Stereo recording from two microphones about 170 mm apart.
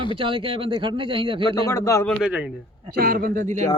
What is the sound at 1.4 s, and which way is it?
Speech, 20° left (ahead or behind).